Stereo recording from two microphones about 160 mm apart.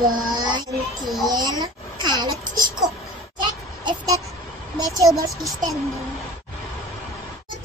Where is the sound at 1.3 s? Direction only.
25° right (ahead or behind).